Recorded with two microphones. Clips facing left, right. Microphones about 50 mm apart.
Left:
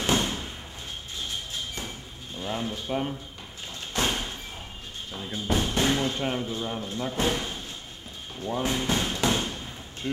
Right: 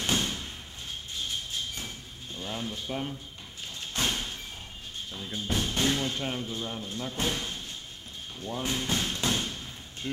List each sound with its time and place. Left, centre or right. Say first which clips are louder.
0.0 s a sound: left 4 dB; left
2.3 s speech: left 4 dB; centre
4.0 s thump: left 3 dB; left
5.1 s speech: left 4 dB; centre
8.5 s thump: left 4 dB; left